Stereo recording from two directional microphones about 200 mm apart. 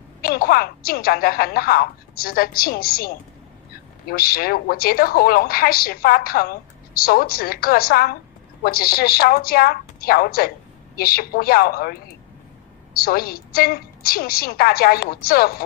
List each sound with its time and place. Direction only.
0.2 s a woman's voice: 50° left (ahead or behind)
4.1 s a woman's voice: 50° left (ahead or behind)